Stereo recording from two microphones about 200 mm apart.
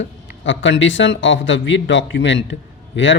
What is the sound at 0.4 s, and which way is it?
Speech, 70° left (ahead or behind).